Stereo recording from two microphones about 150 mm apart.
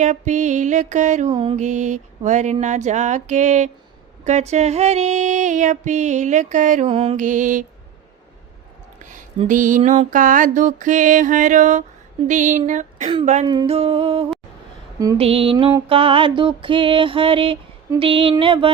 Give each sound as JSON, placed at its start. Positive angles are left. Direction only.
{"t": 0.0, "sound": "mantra", "side_deg": -55}
{"t": 1.3, "sound": "music", "side_deg": -35}
{"t": 1.5, "sound": "mantra", "side_deg": -55}
{"t": 7.3, "sound": "mantra", "side_deg": -60}
{"t": 9.5, "sound": "mantra", "side_deg": -60}
{"t": 13.4, "sound": "music", "side_deg": -30}
{"t": 13.7, "sound": "music", "side_deg": -40}